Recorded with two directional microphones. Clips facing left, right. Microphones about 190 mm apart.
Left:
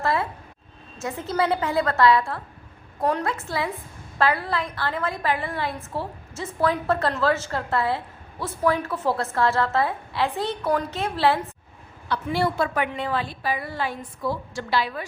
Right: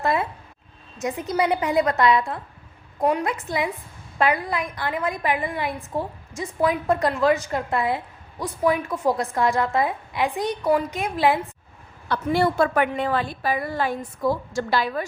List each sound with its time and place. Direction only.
0.0 s a sound: 20° right (ahead or behind)
0.9 s a woman's voice: 15° right (ahead or behind)
12.0 s a woman's voice: 50° right (ahead or behind)